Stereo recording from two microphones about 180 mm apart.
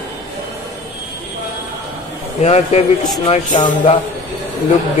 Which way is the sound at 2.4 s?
40° left (ahead or behind).